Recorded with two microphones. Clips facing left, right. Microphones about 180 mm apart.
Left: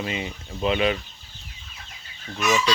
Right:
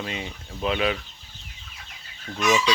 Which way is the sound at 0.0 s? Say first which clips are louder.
Left 3 dB; 5° left (ahead or behind).